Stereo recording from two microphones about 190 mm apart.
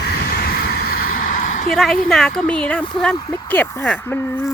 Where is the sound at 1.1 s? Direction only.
45° left (ahead or behind).